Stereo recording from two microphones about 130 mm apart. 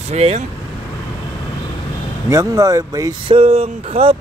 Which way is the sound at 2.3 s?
25° right (ahead or behind).